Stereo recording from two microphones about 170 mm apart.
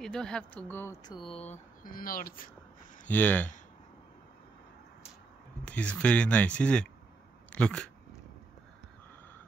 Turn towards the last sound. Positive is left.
turn(degrees=5)  # may be behind; listen again after turning